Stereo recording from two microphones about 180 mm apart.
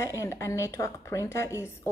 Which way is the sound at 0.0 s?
15° left (ahead or behind).